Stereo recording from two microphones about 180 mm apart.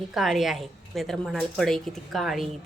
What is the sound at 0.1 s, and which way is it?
A woman's voice, centre (ahead or behind).